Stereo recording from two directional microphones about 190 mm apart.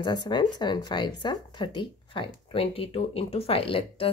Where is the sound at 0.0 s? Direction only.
25° left (ahead or behind).